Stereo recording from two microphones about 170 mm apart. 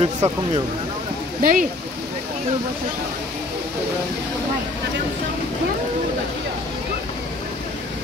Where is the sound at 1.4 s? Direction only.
55° right (ahead or behind).